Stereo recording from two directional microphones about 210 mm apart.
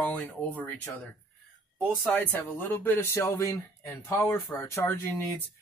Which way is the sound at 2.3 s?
10° left (ahead or behind).